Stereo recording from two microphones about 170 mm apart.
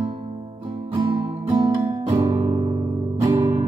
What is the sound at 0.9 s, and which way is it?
Music, 25° right (ahead or behind).